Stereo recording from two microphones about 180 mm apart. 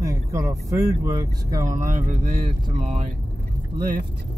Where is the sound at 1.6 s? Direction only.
45° right (ahead or behind).